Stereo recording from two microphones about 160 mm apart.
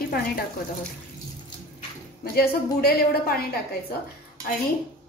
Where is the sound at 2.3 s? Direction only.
75° left (ahead or behind).